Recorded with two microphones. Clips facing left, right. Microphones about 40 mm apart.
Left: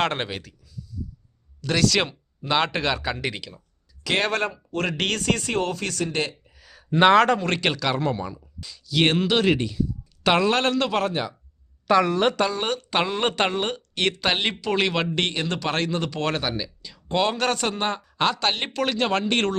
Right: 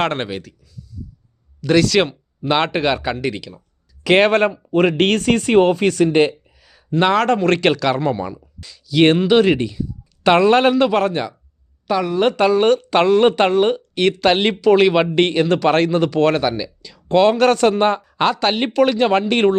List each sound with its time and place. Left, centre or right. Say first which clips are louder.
0.0 s speech: right 4 dB; centre
3.2 s speech: right 6 dB; centre
4.0 s speech: right 10 dB; centre
6.3 s a sound: right 2 dB; centre
6.9 s speech: even; centre
7.3 s speech: right 7 dB; centre